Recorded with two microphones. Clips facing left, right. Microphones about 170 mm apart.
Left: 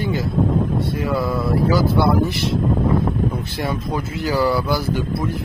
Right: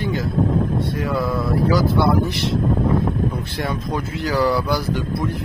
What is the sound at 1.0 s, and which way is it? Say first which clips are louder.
Speech: left 1 dB; centre (ahead or behind).